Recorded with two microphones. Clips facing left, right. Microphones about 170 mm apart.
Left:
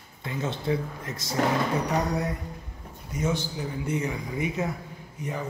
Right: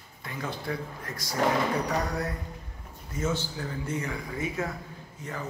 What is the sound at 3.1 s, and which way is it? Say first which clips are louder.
Speech: left 2 dB; 15° left (ahead or behind).